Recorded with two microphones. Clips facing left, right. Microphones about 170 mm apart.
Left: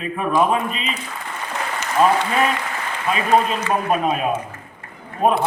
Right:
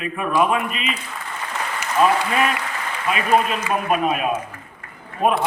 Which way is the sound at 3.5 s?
30° left (ahead or behind).